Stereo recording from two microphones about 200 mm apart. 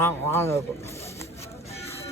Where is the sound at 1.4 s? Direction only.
30° left (ahead or behind).